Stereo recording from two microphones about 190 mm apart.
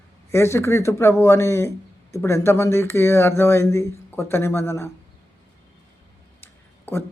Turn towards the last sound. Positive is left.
turn(degrees=10)  # may be behind; listen again after turning